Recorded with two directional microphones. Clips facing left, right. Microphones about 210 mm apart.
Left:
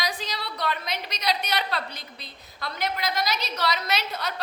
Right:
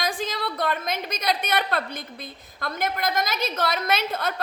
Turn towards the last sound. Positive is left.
turn(degrees=-50)  # may be behind; listen again after turning